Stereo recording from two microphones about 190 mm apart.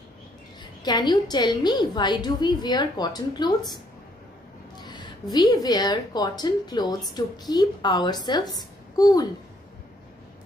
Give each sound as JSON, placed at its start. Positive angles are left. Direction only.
{"t": 0.8, "sound": "a woman's voice", "side_deg": 20}